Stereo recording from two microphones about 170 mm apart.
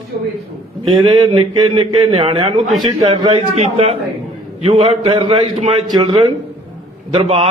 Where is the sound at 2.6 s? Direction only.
Centre (ahead or behind).